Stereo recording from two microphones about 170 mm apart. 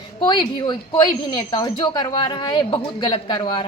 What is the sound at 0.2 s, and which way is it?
A woman's voice, 30° left (ahead or behind).